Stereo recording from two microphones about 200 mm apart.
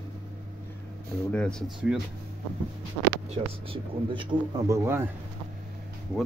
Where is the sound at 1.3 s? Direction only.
5° left (ahead or behind).